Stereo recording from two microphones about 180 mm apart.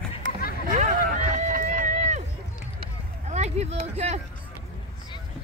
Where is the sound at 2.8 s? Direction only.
40° right (ahead or behind).